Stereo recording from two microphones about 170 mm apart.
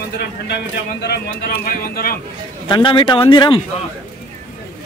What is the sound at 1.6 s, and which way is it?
Speech, 60° left (ahead or behind).